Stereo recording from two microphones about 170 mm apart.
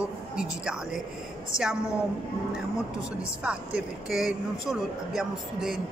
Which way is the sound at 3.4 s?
5° right (ahead or behind).